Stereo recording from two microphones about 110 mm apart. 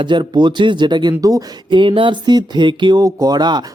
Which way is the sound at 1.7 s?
50° right (ahead or behind).